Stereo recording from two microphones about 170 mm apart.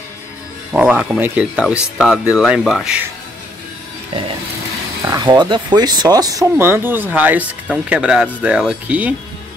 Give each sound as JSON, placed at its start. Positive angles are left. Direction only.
{"t": 0.7, "sound": "speech", "side_deg": -5}
{"t": 5.2, "sound": "speech", "side_deg": -25}